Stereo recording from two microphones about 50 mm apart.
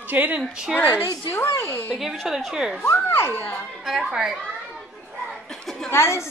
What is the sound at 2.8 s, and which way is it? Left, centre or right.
Speech, left.